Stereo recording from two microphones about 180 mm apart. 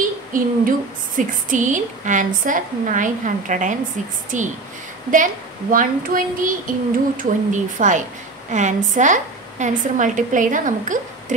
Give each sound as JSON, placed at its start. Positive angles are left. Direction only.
{"t": 0.3, "sound": "speech", "side_deg": -45}